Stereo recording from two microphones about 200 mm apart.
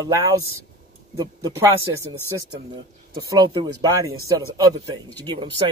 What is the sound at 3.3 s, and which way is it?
Speech, 20° right (ahead or behind).